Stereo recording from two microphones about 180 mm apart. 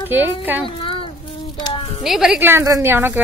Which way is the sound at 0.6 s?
30° left (ahead or behind).